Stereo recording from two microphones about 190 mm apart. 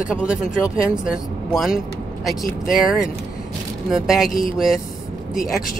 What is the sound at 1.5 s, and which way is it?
Vehicle, centre (ahead or behind).